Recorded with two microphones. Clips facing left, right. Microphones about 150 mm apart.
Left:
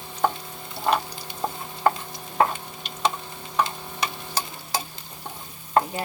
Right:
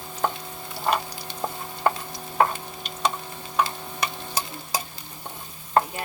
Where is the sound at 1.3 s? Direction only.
15° left (ahead or behind).